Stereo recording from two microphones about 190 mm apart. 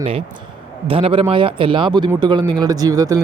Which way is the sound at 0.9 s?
30° right (ahead or behind).